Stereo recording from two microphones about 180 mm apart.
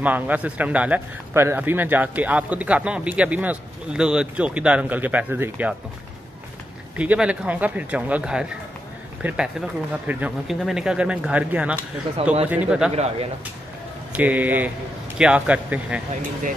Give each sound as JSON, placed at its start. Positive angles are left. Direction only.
{"t": 0.0, "sound": "speech", "side_deg": -10}
{"t": 7.0, "sound": "speech", "side_deg": -5}
{"t": 12.9, "sound": "speech", "side_deg": -35}
{"t": 14.1, "sound": "speech", "side_deg": -10}